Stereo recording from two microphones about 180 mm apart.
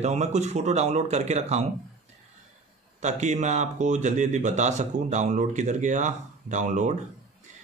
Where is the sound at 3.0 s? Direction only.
40° right (ahead or behind).